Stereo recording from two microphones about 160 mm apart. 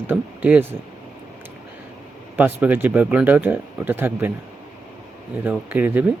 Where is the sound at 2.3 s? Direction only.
10° right (ahead or behind).